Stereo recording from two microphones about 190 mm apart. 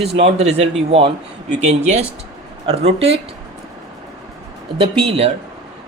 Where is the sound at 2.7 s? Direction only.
35° right (ahead or behind).